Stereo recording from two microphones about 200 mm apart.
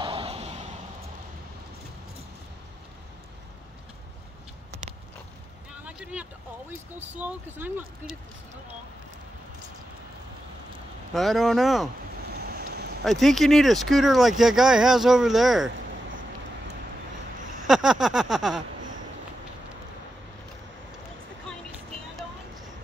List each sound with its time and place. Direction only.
0.0 s a sound: 30° right (ahead or behind)
5.9 s a sound: 5° right (ahead or behind)
7.0 s speech: 10° right (ahead or behind)
11.1 s speech: centre (ahead or behind)
12.3 s vehicle: 50° right (ahead or behind)
13.0 s speech: centre (ahead or behind)
17.6 s speech: centre (ahead or behind)